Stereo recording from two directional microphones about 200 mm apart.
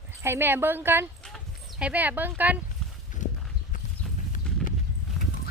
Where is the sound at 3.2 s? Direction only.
40° left (ahead or behind).